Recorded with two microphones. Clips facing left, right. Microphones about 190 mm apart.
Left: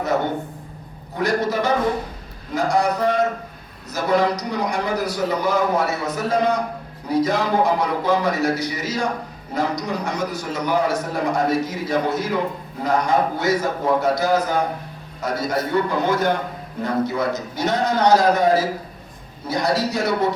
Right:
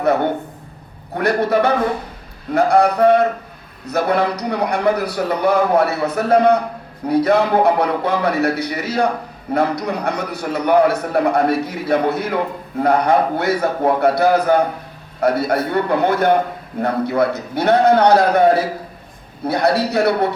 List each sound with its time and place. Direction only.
1.1 s a man's voice: 60° right (ahead or behind)